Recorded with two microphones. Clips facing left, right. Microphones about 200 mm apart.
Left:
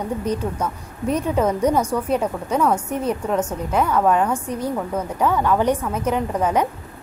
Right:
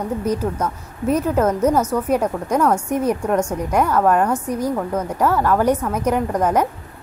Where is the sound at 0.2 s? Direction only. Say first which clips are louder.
Right 2 dB; 10° right (ahead or behind).